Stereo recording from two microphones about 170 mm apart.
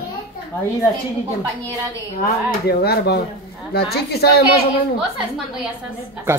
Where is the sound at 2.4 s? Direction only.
70° left (ahead or behind).